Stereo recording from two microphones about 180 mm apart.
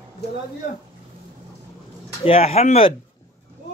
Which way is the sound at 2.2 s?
35° left (ahead or behind).